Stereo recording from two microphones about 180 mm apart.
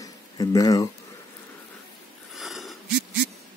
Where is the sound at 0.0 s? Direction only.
20° left (ahead or behind).